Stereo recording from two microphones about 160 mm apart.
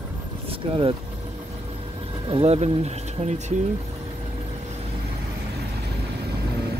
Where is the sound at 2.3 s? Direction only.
35° right (ahead or behind).